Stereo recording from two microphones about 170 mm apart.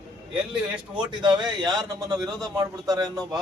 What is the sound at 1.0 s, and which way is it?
Speech, 25° right (ahead or behind).